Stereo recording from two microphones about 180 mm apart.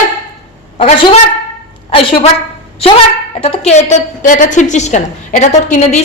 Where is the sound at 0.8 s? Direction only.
35° left (ahead or behind).